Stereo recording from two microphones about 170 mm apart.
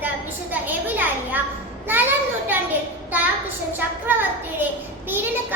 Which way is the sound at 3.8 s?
10° right (ahead or behind).